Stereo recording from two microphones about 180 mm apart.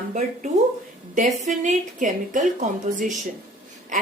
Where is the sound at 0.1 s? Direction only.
40° right (ahead or behind).